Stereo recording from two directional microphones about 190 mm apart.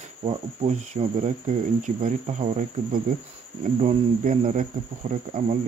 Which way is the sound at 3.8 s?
35° right (ahead or behind).